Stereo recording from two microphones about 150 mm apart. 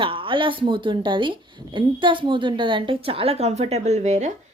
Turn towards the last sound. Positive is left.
turn(degrees=-50)  # may be behind; listen again after turning